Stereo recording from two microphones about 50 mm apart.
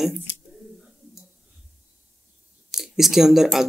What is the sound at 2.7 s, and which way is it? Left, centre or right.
Speech, centre.